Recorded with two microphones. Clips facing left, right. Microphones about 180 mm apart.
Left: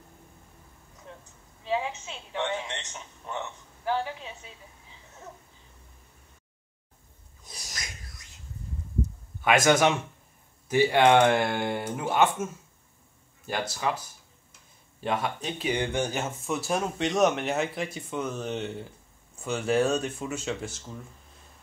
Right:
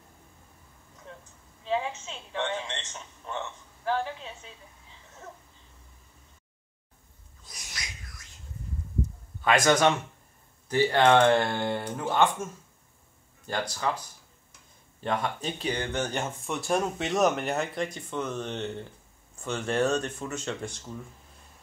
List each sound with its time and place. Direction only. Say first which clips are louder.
1.7 s a sound: even; 10° left (ahead or behind)
7.4 s owl: left 1 dB; 35° left (ahead or behind)
9.4 s speech: left 1 dB; 10° left (ahead or behind)
13.5 s speech: left 1 dB; 5° left (ahead or behind)